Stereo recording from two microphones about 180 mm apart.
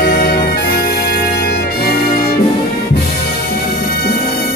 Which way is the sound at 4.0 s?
60° left (ahead or behind).